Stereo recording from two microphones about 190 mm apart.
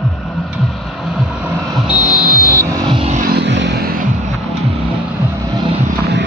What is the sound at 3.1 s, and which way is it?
Vehicle, 55° right (ahead or behind).